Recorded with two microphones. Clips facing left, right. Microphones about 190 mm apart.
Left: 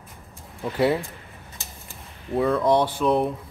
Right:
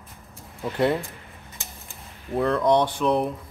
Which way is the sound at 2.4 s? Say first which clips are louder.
Even; centre (ahead or behind).